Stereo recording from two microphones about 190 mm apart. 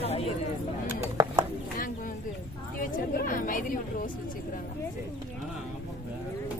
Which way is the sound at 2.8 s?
45° left (ahead or behind).